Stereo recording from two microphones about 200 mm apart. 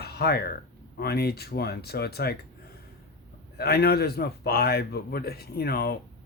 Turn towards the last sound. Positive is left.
turn(degrees=50)  # may be behind; listen again after turning